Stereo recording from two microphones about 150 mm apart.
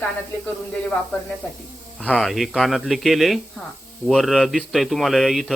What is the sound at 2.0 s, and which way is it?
Speech, centre (ahead or behind).